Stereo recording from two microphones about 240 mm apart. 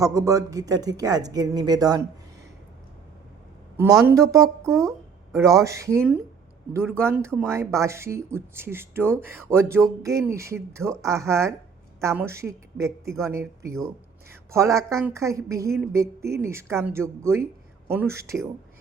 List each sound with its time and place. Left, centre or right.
0.0 s speech: centre
3.8 s speech: centre